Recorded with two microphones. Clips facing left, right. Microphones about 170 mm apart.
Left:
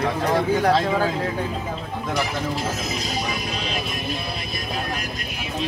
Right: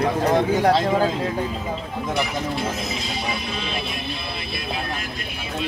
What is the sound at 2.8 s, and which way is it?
Music, 40° left (ahead or behind).